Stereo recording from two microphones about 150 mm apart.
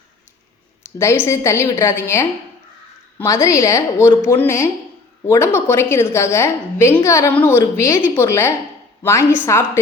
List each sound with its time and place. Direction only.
0.8 s a woman's voice: 15° left (ahead or behind)